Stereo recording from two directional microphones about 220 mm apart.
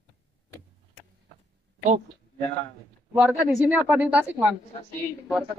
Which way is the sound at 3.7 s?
5° right (ahead or behind).